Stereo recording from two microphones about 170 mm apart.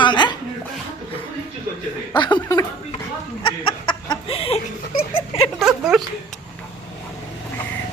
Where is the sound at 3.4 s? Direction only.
30° left (ahead or behind).